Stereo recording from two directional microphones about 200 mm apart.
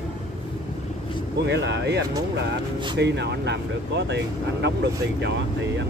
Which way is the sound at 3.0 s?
55° right (ahead or behind).